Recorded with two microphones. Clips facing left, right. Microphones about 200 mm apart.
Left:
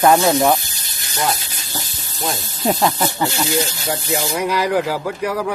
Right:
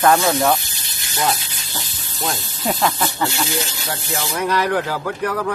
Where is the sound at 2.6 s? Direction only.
15° left (ahead or behind).